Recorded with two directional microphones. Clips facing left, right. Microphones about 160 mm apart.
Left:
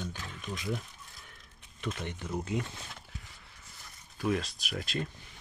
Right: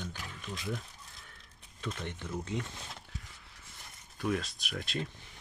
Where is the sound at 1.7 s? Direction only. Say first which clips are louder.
Left 2 dB; 10° left (ahead or behind).